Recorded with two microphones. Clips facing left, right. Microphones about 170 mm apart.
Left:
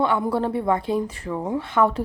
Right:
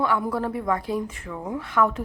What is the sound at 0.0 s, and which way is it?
Speech, 25° left (ahead or behind).